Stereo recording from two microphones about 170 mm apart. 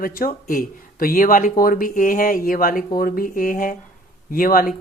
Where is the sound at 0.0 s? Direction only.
55° left (ahead or behind).